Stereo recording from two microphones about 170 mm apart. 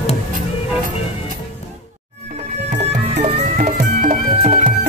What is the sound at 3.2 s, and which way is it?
Music, 50° right (ahead or behind).